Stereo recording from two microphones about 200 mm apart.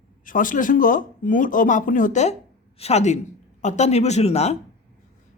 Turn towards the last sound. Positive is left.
turn(degrees=35)  # may be behind; listen again after turning